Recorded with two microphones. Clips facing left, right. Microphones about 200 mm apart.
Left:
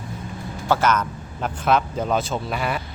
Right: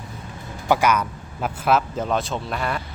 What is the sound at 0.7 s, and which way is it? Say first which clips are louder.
Speech: right 1 dB; 10° right (ahead or behind).